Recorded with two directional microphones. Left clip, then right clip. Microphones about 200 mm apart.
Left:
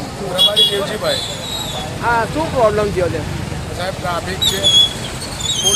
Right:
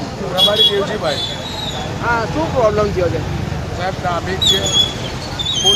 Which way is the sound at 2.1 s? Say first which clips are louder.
Left 1 dB; 45° left (ahead or behind).